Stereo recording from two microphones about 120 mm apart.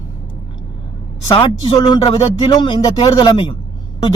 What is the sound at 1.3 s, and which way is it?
A man's voice, 45° left (ahead or behind).